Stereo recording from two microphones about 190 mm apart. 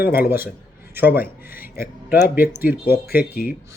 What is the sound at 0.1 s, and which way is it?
Speech, 10° right (ahead or behind).